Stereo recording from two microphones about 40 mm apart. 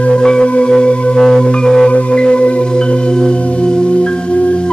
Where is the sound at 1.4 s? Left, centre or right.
Left.